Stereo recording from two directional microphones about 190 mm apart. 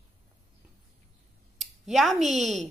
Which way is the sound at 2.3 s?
Centre (ahead or behind).